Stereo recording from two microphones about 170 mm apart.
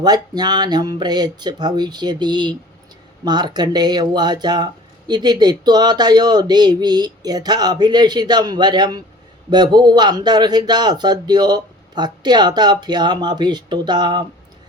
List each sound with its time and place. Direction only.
0.0 s speech: 25° right (ahead or behind)